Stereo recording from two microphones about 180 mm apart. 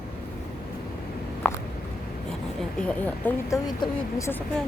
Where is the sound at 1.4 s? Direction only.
10° left (ahead or behind).